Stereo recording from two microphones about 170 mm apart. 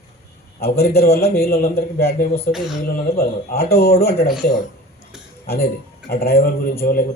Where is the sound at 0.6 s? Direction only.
65° left (ahead or behind).